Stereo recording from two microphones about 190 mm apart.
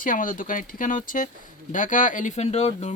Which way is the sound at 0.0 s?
45° left (ahead or behind).